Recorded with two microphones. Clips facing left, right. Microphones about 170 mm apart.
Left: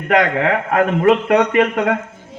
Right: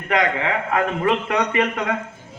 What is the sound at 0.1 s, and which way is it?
A man's voice, 55° left (ahead or behind).